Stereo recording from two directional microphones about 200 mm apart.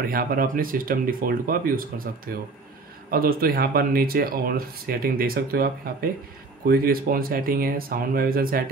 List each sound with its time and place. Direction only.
0.0 s speech: 45° right (ahead or behind)
3.1 s speech: 50° right (ahead or behind)